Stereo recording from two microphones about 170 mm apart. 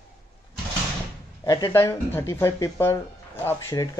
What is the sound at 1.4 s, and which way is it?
Speech, 15° left (ahead or behind).